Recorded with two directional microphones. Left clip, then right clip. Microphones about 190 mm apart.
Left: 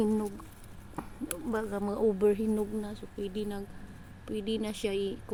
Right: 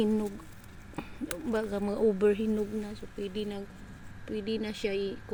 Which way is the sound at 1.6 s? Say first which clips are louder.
Right 1 dB; 5° right (ahead or behind).